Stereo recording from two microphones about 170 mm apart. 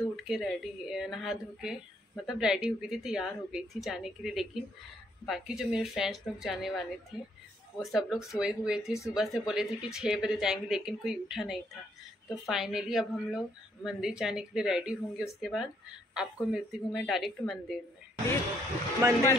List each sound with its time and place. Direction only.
0.1 s speech: centre (ahead or behind)
19.0 s speech: 15° right (ahead or behind)